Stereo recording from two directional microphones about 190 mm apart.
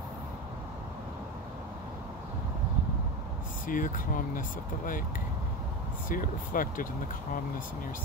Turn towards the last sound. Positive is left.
turn(degrees=45)  # may be behind; listen again after turning